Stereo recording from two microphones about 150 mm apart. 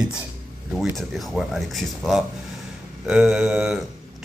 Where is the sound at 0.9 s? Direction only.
Centre (ahead or behind).